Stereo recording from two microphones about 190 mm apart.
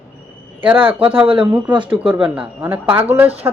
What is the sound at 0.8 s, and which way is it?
Speech, 30° right (ahead or behind).